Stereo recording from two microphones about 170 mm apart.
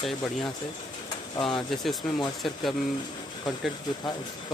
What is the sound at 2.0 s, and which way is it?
Speech, 5° left (ahead or behind).